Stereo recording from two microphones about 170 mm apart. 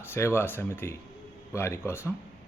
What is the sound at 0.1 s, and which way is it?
Speech, 15° left (ahead or behind).